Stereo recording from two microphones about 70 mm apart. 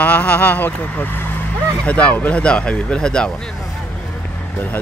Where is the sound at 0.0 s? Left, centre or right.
Centre.